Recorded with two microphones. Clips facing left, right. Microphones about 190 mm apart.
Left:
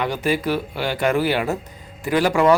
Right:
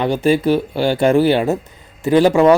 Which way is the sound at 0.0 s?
25° right (ahead or behind).